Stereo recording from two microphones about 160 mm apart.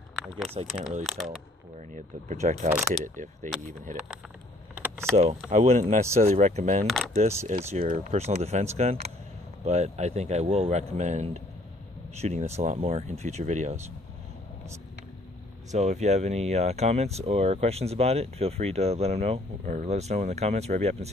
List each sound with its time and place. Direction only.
0.7 s speech: 5° right (ahead or behind)
1.8 s speech: 45° right (ahead or behind)
4.7 s vehicle: 15° right (ahead or behind)
5.1 s speech: 40° right (ahead or behind)
7.8 s speech: 60° right (ahead or behind)
8.1 s speech: 40° right (ahead or behind)
15.7 s speech: 45° right (ahead or behind)